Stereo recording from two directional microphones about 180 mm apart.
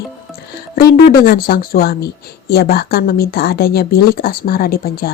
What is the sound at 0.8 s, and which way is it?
Speech, 55° left (ahead or behind).